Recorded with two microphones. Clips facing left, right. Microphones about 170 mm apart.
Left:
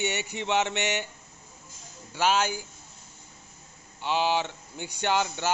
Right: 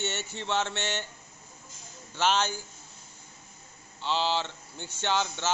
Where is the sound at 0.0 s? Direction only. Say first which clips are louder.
Left 4 dB; 15° left (ahead or behind).